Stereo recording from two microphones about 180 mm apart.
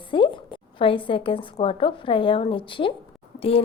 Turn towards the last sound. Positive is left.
turn(degrees=30)  # may be behind; listen again after turning